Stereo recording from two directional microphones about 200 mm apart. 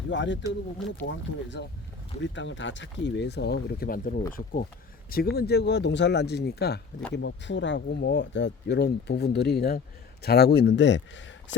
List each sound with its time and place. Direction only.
0.1 s speech: 65° left (ahead or behind)